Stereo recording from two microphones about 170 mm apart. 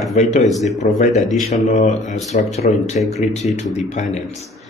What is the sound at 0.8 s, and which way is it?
Speech, 60° left (ahead or behind).